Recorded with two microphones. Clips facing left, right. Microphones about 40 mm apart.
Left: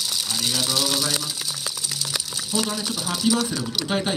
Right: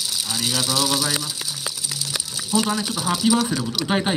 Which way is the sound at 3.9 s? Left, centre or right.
Centre.